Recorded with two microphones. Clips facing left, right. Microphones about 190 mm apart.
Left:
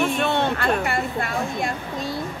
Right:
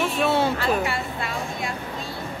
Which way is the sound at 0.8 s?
50° left (ahead or behind).